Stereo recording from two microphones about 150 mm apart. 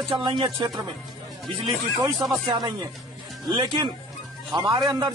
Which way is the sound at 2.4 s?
30° right (ahead or behind).